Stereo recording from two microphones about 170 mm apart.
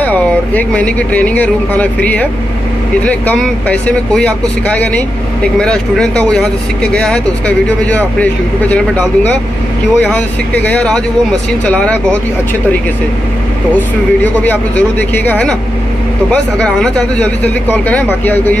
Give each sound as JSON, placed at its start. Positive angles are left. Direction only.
{"t": 0.0, "sound": "speech", "side_deg": 10}
{"t": 13.7, "sound": "speech", "side_deg": 10}